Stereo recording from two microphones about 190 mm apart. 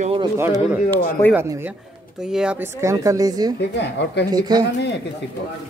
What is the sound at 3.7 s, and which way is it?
Speech, 65° left (ahead or behind).